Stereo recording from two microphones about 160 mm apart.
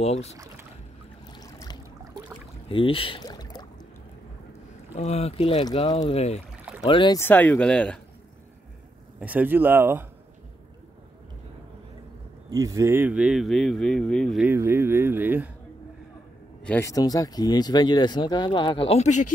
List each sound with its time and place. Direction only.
0.0 s speech: 40° left (ahead or behind)
1.3 s a sound: 25° left (ahead or behind)
2.7 s speech: 35° left (ahead or behind)
3.3 s boat: 25° left (ahead or behind)
4.9 s speech: 40° left (ahead or behind)
7.2 s speech: 10° left (ahead or behind)
9.2 s speech: 10° right (ahead or behind)
12.4 s speech: 20° right (ahead or behind); by 14.4 s 5° left (ahead or behind)
14.4 s speech: 10° right (ahead or behind)
16.6 s speech: 10° left (ahead or behind)
16.9 s speech: 20° left (ahead or behind)
18.9 s speech: 50° left (ahead or behind)